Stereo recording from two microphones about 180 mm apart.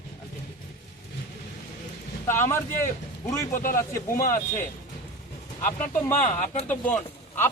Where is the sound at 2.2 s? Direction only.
15° left (ahead or behind).